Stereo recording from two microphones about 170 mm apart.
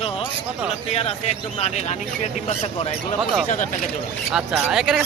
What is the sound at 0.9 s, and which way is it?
Speech, 40° left (ahead or behind).